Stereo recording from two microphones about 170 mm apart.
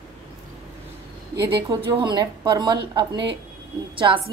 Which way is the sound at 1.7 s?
25° right (ahead or behind).